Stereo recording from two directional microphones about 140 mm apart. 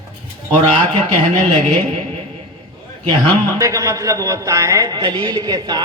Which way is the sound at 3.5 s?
20° right (ahead or behind).